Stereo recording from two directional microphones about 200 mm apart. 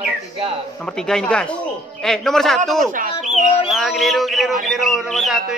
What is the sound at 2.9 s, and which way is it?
Speech, 40° right (ahead or behind).